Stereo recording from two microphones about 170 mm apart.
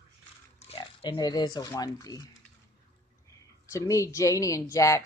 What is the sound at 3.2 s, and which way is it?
Speech, 20° left (ahead or behind).